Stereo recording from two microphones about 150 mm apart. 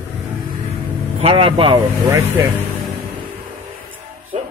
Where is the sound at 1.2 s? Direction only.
40° right (ahead or behind).